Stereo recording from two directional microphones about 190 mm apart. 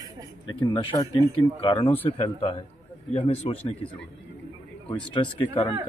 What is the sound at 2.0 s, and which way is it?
A man's voice, 30° left (ahead or behind).